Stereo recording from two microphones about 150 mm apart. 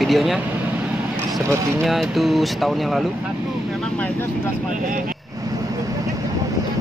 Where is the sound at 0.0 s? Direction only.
Centre (ahead or behind).